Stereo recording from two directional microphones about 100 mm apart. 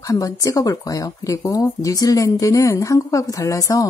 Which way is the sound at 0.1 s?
35° left (ahead or behind).